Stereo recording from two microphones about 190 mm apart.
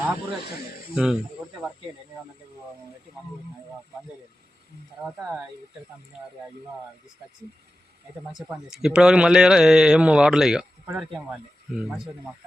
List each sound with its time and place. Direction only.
0.9 s speech: 5° right (ahead or behind)
1.4 s snake: 15° right (ahead or behind)
5.0 s speech: 5° right (ahead or behind)
8.3 s speech: centre (ahead or behind)